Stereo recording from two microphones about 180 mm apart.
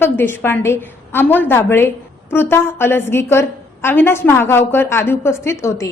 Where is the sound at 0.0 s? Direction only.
10° left (ahead or behind).